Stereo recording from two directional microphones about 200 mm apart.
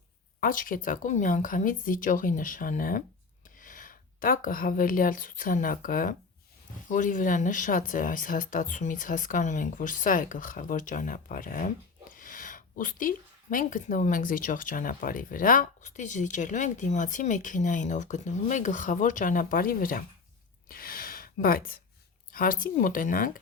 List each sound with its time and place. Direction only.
0.3 s speech: 45° left (ahead or behind)
20.7 s a sound: 45° left (ahead or behind)
22.3 s speech: 45° left (ahead or behind)